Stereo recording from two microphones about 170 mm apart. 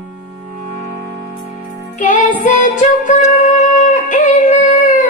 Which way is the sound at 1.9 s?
50° left (ahead or behind).